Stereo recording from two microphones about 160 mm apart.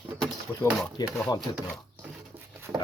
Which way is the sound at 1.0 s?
25° left (ahead or behind).